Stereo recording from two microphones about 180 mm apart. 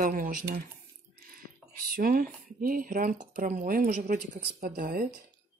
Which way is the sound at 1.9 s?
55° right (ahead or behind).